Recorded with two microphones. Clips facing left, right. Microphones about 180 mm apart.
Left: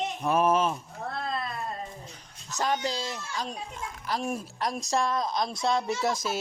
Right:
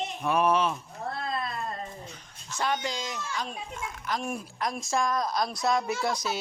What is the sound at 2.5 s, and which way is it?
Speech, 40° left (ahead or behind).